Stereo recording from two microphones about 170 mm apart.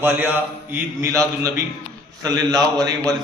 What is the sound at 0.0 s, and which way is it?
A man's voice, 10° right (ahead or behind).